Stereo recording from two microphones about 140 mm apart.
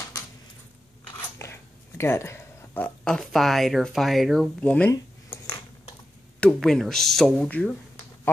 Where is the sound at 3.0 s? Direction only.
5° left (ahead or behind).